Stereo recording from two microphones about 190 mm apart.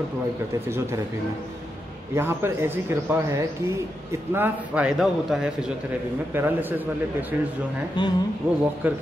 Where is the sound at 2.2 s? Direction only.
10° right (ahead or behind).